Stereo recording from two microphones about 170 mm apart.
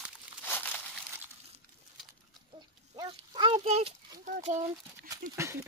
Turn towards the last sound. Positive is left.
turn(degrees=-15)  # may be behind; listen again after turning